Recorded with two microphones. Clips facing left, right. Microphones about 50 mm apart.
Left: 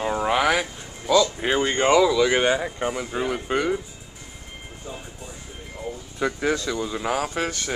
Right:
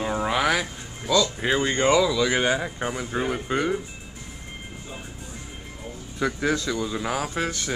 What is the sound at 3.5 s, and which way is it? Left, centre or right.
Speech, centre.